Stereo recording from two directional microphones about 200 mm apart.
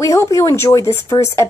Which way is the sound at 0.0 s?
15° left (ahead or behind).